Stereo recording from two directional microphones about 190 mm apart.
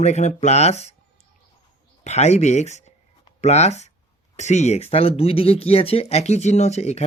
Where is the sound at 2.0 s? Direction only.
35° left (ahead or behind).